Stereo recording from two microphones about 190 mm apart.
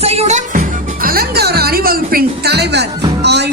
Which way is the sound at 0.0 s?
35° right (ahead or behind).